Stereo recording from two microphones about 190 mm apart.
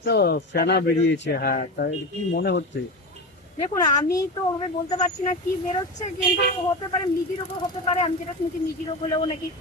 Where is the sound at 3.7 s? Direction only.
15° left (ahead or behind).